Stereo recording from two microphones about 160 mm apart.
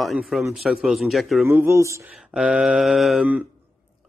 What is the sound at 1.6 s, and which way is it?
Speech, 20° right (ahead or behind).